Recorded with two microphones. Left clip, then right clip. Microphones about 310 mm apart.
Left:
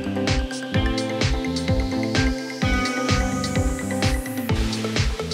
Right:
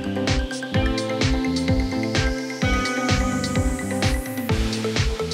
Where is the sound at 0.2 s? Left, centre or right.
Centre.